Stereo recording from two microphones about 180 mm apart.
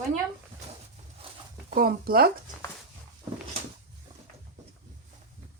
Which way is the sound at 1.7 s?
55° right (ahead or behind).